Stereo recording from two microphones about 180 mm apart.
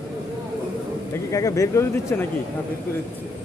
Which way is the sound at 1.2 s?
20° left (ahead or behind).